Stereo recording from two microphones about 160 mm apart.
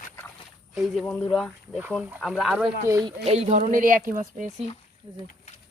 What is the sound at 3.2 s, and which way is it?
Speech, 45° right (ahead or behind).